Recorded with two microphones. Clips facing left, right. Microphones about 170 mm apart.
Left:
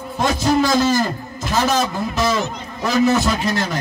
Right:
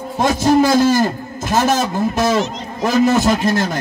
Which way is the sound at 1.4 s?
50° right (ahead or behind).